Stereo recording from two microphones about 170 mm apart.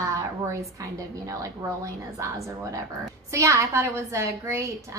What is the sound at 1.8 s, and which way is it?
A woman's voice, 20° right (ahead or behind).